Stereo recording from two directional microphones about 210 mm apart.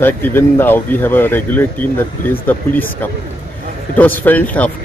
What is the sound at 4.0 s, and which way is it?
Speech, 10° left (ahead or behind).